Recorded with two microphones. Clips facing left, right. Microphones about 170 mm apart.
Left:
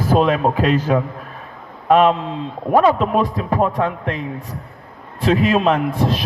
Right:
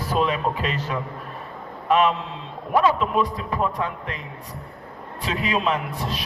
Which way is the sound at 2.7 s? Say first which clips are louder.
Left 5 dB; 45° left (ahead or behind).